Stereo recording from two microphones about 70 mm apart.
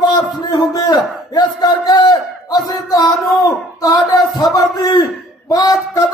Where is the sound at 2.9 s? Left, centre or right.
Left.